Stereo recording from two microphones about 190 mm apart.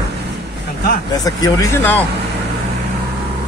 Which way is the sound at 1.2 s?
20° left (ahead or behind).